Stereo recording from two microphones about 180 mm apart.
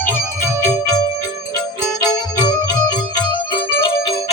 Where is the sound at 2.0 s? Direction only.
20° left (ahead or behind).